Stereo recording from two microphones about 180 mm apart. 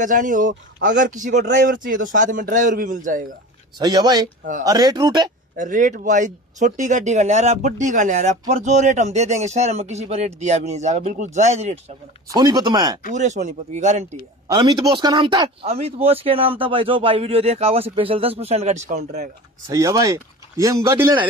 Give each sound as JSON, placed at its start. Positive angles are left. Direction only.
{"t": 0.0, "sound": "a man's voice", "side_deg": -45}
{"t": 3.7, "sound": "speech", "side_deg": -25}
{"t": 5.6, "sound": "speech", "side_deg": -45}
{"t": 12.4, "sound": "speech", "side_deg": -20}
{"t": 13.1, "sound": "speech", "side_deg": -40}
{"t": 14.5, "sound": "speech", "side_deg": -25}
{"t": 19.7, "sound": "speech", "side_deg": -20}